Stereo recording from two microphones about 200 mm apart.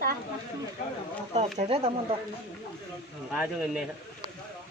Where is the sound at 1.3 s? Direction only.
35° right (ahead or behind).